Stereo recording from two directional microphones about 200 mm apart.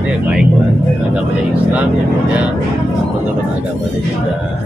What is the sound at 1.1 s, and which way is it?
Speech, 5° right (ahead or behind).